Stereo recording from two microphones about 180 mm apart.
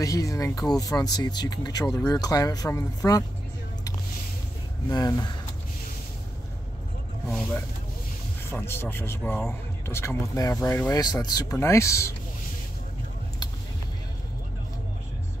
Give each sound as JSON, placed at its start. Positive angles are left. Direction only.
{"t": 0.0, "sound": "speech", "side_deg": 20}
{"t": 4.8, "sound": "speech", "side_deg": 20}
{"t": 8.5, "sound": "speech", "side_deg": 15}